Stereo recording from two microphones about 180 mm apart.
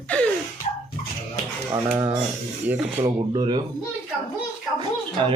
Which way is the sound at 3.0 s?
25° right (ahead or behind).